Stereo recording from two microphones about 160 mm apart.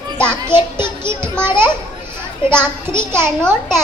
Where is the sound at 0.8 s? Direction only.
15° right (ahead or behind).